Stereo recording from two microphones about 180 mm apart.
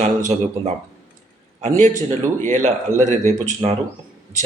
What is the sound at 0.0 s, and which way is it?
Speech, 40° right (ahead or behind).